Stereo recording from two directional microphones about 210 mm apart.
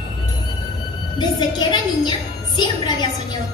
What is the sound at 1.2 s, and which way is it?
A woman's voice, 20° left (ahead or behind).